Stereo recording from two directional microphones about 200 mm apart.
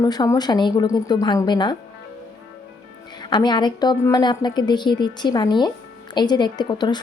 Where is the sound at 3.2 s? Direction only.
20° left (ahead or behind).